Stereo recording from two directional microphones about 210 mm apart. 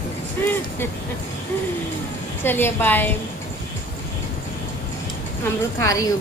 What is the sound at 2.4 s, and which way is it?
Speech, 10° left (ahead or behind).